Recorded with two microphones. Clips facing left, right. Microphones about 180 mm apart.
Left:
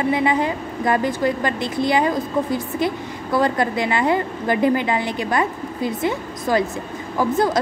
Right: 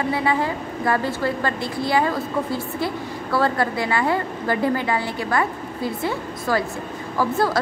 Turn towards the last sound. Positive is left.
turn(degrees=20)  # may be behind; listen again after turning